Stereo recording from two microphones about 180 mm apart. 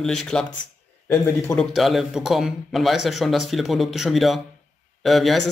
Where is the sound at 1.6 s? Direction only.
Centre (ahead or behind).